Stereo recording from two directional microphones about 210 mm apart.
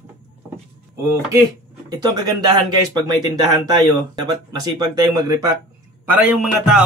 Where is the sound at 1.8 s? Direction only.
20° right (ahead or behind); by 6.8 s 5° right (ahead or behind).